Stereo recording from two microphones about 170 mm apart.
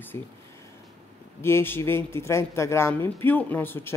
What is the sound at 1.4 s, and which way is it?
Speech, 15° left (ahead or behind).